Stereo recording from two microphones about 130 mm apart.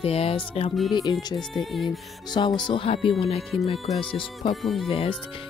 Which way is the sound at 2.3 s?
35° left (ahead or behind).